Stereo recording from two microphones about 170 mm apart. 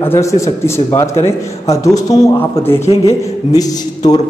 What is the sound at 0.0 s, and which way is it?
A man's voice, 15° left (ahead or behind).